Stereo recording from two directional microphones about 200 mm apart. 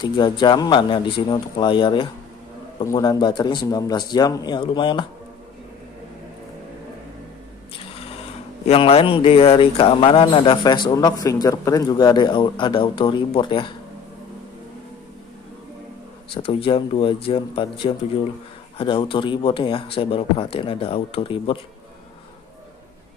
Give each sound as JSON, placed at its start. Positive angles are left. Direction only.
{"t": 0.0, "sound": "speech", "side_deg": 25}
{"t": 8.6, "sound": "speech", "side_deg": 30}
{"t": 16.3, "sound": "speech", "side_deg": 25}